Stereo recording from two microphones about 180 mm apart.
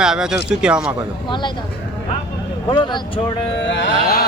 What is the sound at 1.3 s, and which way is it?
Speech, 25° left (ahead or behind).